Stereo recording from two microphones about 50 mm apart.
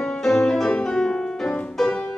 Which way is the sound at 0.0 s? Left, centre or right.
Centre.